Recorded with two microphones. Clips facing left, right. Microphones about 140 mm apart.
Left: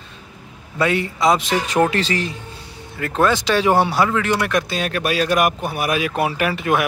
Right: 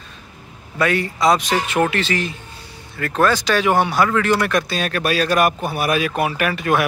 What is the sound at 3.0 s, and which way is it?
Speech, 20° left (ahead or behind).